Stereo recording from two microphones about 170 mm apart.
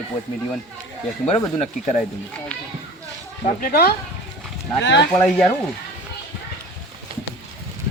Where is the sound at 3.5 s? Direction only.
55° left (ahead or behind).